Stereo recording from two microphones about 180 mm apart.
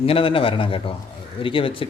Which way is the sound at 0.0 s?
30° left (ahead or behind).